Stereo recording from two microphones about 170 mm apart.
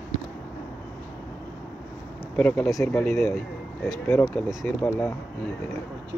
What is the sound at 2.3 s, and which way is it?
Speech, 10° left (ahead or behind).